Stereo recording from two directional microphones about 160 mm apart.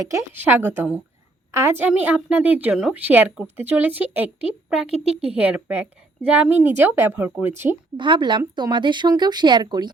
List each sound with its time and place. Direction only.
0.0 s a woman's voice: 20° right (ahead or behind)
7.9 s speech: 30° right (ahead or behind)